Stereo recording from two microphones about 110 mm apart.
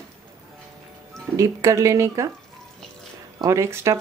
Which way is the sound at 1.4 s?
30° right (ahead or behind).